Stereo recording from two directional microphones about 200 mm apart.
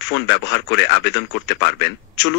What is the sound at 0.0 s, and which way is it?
Speech, 60° left (ahead or behind).